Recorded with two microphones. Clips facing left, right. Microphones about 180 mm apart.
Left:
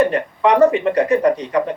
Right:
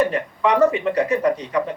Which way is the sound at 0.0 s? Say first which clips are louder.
Left 4 dB; 65° left (ahead or behind).